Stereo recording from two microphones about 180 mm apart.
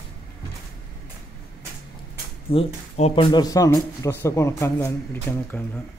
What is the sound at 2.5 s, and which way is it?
Speech, 35° left (ahead or behind).